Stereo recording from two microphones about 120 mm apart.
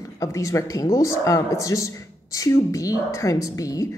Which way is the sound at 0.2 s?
25° left (ahead or behind).